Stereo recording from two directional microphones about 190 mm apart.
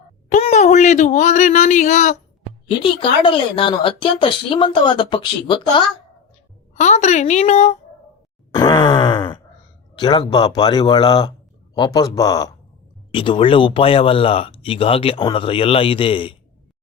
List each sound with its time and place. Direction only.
0.3 s speech: 40° left (ahead or behind)
2.6 s speech: 25° left (ahead or behind)
6.7 s a woman's voice: 35° left (ahead or behind)
8.5 s groan: 20° left (ahead or behind)
9.9 s speech: 25° left (ahead or behind)